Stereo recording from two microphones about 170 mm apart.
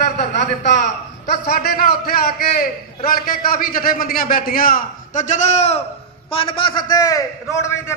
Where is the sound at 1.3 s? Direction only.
65° left (ahead or behind); by 7.9 s 15° left (ahead or behind).